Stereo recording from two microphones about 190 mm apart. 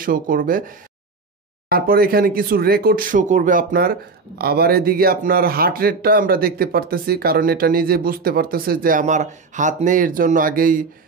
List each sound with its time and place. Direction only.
0.0 s speech: 45° right (ahead or behind)